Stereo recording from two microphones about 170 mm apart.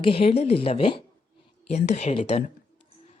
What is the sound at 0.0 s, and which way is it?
Speech, 35° left (ahead or behind).